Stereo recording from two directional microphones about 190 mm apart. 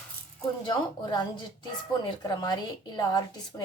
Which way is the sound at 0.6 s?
25° left (ahead or behind).